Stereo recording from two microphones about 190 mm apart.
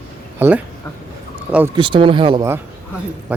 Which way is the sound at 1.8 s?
25° right (ahead or behind).